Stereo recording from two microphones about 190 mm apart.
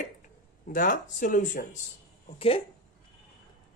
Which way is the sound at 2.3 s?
30° left (ahead or behind).